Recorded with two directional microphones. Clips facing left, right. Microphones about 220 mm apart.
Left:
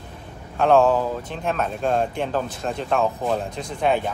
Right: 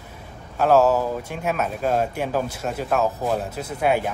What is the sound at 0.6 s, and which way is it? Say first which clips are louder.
Speech: even; 5° right (ahead or behind).